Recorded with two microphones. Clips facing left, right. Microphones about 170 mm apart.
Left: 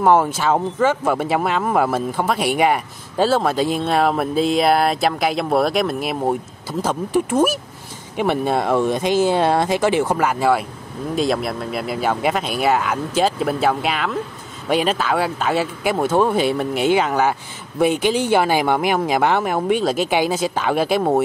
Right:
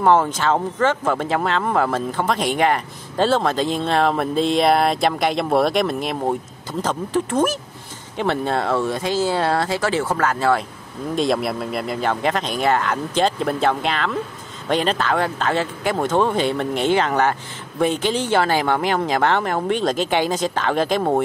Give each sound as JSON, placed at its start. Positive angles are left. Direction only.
{"t": 0.0, "sound": "speech", "side_deg": 10}
{"t": 11.1, "sound": "speech", "side_deg": 0}